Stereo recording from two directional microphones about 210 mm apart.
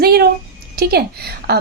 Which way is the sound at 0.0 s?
45° right (ahead or behind).